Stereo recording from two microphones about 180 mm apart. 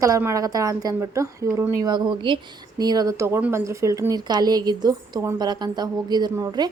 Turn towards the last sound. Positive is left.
turn(degrees=-20)  # may be behind; listen again after turning